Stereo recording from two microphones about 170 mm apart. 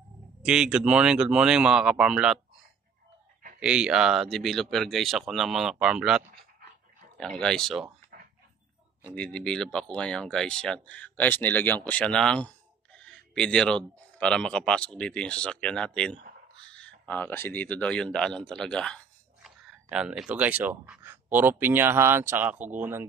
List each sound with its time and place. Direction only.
0.4 s speech: 5° right (ahead or behind)
3.5 s speech: 5° right (ahead or behind)
8.1 s dog: 55° right (ahead or behind)
9.0 s speech: 5° left (ahead or behind); by 23.0 s 15° right (ahead or behind)